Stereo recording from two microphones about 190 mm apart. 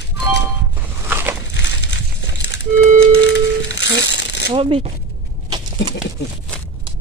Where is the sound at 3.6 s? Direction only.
65° left (ahead or behind).